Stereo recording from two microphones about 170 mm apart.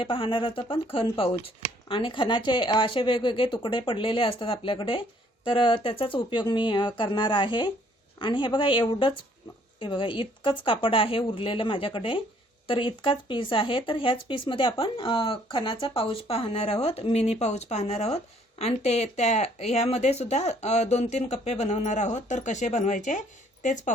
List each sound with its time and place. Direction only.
0.0 s a woman's voice: 30° left (ahead or behind)